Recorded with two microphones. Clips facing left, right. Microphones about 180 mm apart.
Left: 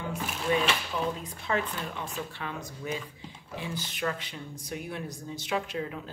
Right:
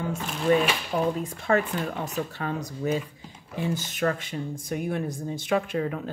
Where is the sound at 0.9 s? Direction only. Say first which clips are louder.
Right 6 dB; 50° right (ahead or behind).